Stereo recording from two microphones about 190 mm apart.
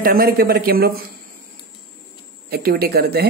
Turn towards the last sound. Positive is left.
turn(degrees=-55)  # may be behind; listen again after turning